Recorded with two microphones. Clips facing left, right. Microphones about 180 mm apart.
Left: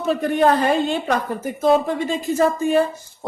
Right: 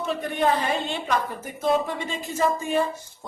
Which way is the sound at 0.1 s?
45° left (ahead or behind).